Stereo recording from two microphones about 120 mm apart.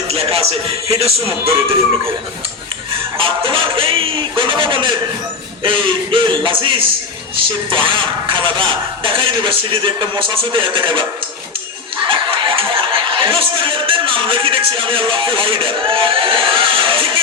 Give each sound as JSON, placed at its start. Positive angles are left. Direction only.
{"t": 0.1, "sound": "music", "side_deg": -55}
{"t": 0.9, "sound": "speech", "side_deg": -55}
{"t": 3.2, "sound": "speech", "side_deg": -45}
{"t": 12.0, "sound": "speech", "side_deg": -45}